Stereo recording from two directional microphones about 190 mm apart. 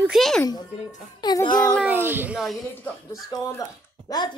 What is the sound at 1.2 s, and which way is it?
Speech, 20° left (ahead or behind).